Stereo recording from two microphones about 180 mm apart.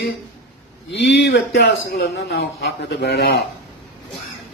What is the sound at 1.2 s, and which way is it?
A man's voice, 65° left (ahead or behind).